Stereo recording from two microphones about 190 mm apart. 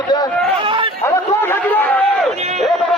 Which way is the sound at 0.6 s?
25° right (ahead or behind).